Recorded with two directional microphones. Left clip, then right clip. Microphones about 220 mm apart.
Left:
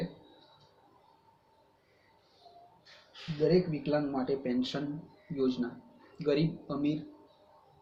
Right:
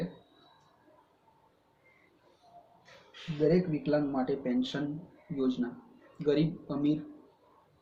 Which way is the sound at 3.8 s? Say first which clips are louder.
Right 1 dB; 5° left (ahead or behind).